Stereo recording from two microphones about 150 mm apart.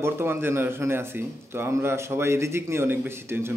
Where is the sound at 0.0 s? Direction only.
15° right (ahead or behind).